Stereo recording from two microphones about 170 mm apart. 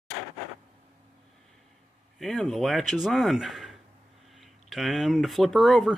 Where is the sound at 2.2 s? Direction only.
Centre (ahead or behind).